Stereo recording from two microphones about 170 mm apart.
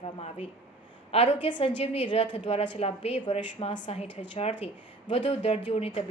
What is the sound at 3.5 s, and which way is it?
A woman's voice, 30° left (ahead or behind).